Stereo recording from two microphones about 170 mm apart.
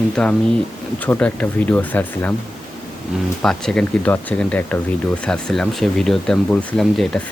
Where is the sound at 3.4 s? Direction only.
5° left (ahead or behind).